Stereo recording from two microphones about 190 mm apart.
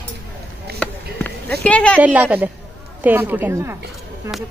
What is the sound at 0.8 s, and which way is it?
Basketball bounce, 5° left (ahead or behind).